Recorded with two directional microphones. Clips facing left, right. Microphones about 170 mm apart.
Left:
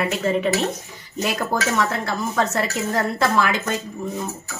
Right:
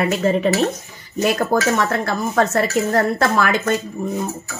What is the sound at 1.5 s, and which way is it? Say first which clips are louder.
Speech: right 4 dB; 55° right (ahead or behind).